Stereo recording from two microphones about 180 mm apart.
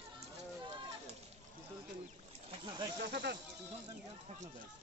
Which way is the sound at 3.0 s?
70° right (ahead or behind).